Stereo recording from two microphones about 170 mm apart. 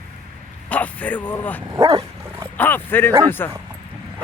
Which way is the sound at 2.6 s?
10° left (ahead or behind).